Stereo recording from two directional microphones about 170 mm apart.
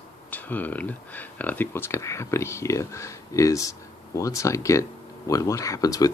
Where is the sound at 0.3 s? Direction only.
10° left (ahead or behind).